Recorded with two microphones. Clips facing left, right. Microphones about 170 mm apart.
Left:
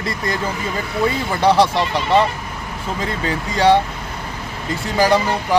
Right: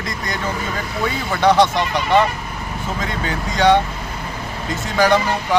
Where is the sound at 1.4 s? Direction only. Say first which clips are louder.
Even; 30° left (ahead or behind).